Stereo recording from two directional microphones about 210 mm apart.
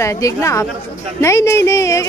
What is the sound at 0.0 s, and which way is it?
Speech, 15° left (ahead or behind).